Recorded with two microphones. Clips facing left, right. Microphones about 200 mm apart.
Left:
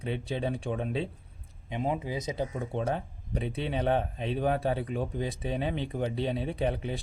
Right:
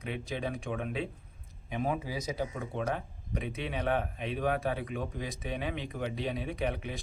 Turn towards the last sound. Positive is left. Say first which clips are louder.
# left 4 dB
turn(degrees=30)  # may be behind; listen again after turning